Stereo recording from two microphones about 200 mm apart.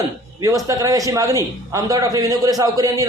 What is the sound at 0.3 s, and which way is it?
A man's voice, 15° right (ahead or behind).